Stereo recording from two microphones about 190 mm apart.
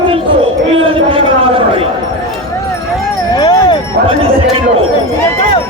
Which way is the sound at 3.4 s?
20° left (ahead or behind).